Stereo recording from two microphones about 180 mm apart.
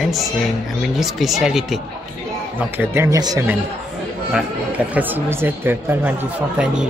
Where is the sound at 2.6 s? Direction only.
15° right (ahead or behind).